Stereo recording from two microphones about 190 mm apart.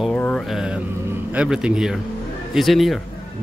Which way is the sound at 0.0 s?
5° left (ahead or behind).